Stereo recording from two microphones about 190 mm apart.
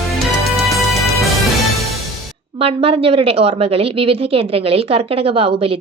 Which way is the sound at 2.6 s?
30° right (ahead or behind).